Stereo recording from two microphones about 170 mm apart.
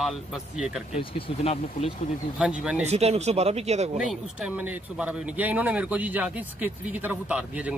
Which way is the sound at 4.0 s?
5° right (ahead or behind).